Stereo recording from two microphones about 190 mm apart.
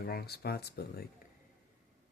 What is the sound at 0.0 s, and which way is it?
Speech, 55° left (ahead or behind).